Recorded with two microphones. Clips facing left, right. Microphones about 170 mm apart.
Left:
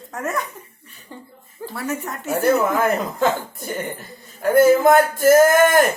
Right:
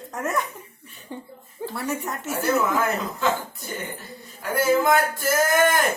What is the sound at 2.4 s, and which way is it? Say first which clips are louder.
A man's voice: left 5 dB; 50° left (ahead or behind).